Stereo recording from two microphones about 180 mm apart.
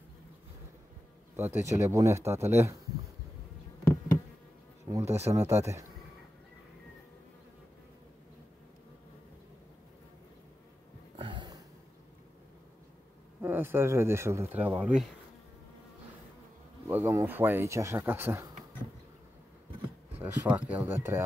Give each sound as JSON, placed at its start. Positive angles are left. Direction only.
{"t": 1.3, "sound": "speech", "side_deg": -10}
{"t": 4.8, "sound": "speech", "side_deg": -15}
{"t": 11.1, "sound": "a sound", "side_deg": -25}
{"t": 13.4, "sound": "speech", "side_deg": -10}
{"t": 16.8, "sound": "speech", "side_deg": -15}
{"t": 20.2, "sound": "speech", "side_deg": -10}